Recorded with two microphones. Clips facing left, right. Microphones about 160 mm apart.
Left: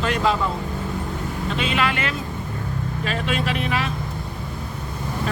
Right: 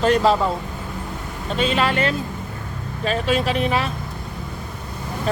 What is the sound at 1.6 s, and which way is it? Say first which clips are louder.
Speech: right 5 dB; 35° right (ahead or behind).